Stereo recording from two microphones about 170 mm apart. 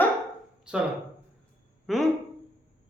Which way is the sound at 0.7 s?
5° right (ahead or behind).